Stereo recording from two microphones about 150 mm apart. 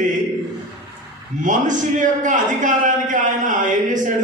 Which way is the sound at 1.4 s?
55° right (ahead or behind).